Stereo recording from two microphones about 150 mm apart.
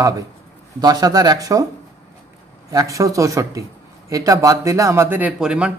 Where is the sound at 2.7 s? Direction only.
20° right (ahead or behind).